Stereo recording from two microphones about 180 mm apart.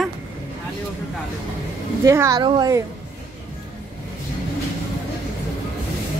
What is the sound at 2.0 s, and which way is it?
Speech, 15° right (ahead or behind).